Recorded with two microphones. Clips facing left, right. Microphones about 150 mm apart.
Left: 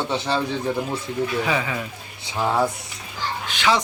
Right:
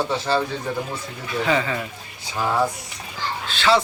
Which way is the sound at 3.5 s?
15° left (ahead or behind).